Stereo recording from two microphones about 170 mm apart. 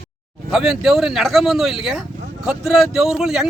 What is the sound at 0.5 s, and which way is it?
Speech, centre (ahead or behind).